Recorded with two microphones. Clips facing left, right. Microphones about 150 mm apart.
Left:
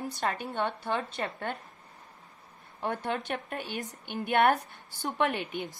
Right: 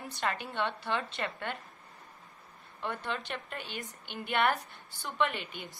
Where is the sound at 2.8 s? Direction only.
50° left (ahead or behind).